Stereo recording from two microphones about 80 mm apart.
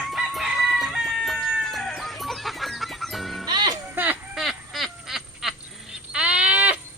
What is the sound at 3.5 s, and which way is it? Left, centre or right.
Music, right.